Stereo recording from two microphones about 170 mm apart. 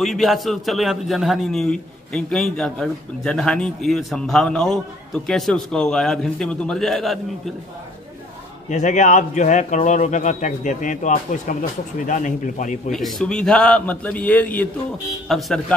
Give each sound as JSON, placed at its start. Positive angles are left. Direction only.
{"t": 0.0, "sound": "a man's voice", "side_deg": 0}
{"t": 8.6, "sound": "a man's voice", "side_deg": 45}
{"t": 12.9, "sound": "a man's voice", "side_deg": 5}